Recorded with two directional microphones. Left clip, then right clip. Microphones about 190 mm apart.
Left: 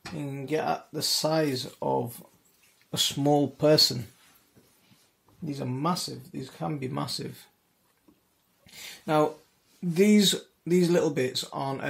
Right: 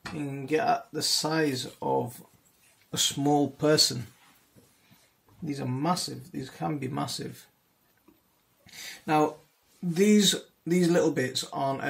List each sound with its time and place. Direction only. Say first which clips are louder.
0.2 s speech: right 2 dB; 30° left (ahead or behind)
5.5 s speech: right 1 dB; 20° left (ahead or behind)
8.7 s speech: even; 25° left (ahead or behind)